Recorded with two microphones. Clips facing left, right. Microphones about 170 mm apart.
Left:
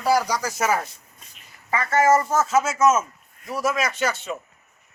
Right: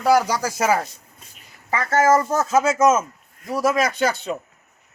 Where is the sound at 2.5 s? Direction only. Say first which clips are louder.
Right 4 dB; 35° right (ahead or behind).